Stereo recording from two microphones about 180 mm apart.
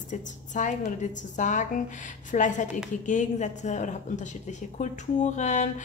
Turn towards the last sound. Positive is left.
turn(degrees=40)  # may be behind; listen again after turning